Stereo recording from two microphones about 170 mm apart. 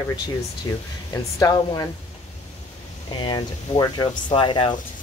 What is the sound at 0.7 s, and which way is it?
Speech, 20° left (ahead or behind).